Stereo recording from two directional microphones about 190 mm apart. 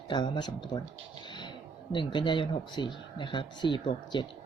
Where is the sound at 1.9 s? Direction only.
25° left (ahead or behind).